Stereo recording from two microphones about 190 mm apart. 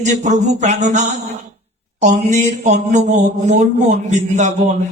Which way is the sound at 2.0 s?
40° right (ahead or behind).